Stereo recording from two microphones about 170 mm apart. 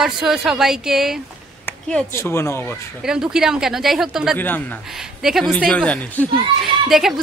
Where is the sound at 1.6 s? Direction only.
5° left (ahead or behind).